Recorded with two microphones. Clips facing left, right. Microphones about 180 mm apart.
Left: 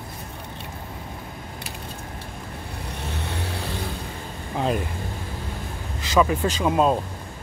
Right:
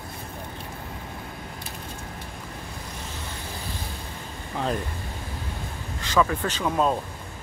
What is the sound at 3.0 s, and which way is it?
Vehicle, 65° left (ahead or behind).